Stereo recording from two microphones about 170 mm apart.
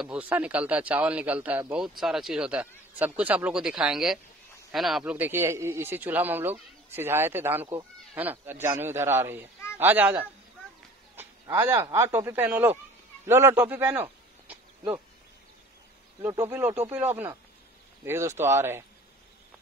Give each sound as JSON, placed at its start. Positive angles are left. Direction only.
{"t": 0.0, "sound": "a man's voice", "side_deg": -10}
{"t": 16.3, "sound": "speech", "side_deg": -15}